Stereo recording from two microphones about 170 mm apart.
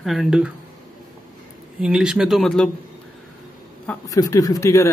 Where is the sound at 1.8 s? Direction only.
5° right (ahead or behind).